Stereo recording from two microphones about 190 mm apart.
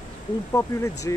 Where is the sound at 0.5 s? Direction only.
15° left (ahead or behind).